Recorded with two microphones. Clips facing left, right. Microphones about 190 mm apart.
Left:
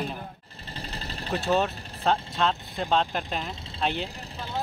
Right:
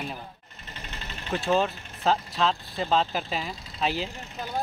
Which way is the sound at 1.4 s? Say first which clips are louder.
Right 1 dB; centre (ahead or behind).